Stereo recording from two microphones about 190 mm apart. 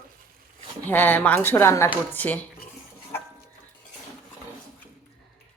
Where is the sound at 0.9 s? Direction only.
10° left (ahead or behind).